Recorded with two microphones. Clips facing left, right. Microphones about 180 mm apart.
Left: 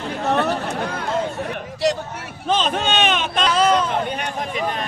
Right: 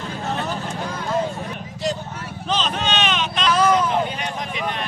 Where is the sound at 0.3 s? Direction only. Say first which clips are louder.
Left 7 dB; 70° left (ahead or behind).